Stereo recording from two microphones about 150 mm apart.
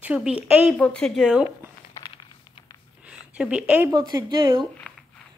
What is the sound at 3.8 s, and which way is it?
Speech, 25° right (ahead or behind).